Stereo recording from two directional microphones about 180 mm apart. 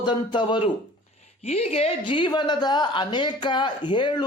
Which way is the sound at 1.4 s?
35° left (ahead or behind).